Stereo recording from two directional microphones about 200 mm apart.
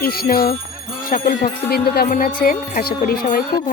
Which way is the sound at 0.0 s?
50° left (ahead or behind).